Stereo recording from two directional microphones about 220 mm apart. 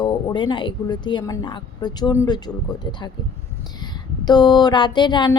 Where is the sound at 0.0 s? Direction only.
20° left (ahead or behind).